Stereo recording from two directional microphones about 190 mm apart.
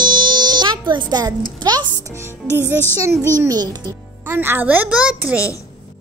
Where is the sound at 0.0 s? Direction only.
25° right (ahead or behind).